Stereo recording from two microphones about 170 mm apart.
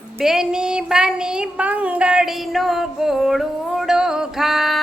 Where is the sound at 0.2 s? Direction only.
5° right (ahead or behind).